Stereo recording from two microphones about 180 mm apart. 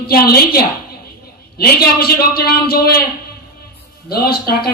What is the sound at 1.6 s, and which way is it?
Speech, 60° left (ahead or behind).